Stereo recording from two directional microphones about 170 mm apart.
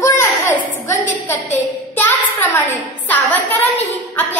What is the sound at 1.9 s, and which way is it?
Child singing, 10° left (ahead or behind).